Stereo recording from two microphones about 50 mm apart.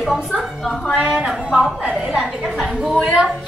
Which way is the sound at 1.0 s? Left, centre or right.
Centre.